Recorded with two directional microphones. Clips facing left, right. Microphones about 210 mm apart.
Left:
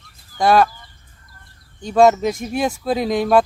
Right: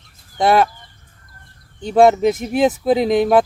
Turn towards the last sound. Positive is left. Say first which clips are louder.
# right 2 dB
turn(degrees=-20)  # may be behind; listen again after turning